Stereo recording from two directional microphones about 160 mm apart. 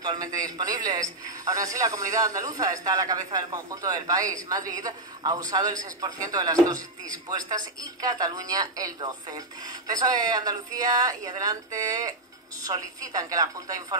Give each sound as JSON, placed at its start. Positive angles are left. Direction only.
{"t": 0.0, "sound": "a man's voice", "side_deg": -25}